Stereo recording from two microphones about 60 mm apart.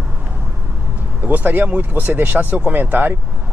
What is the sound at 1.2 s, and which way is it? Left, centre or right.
Speech, right.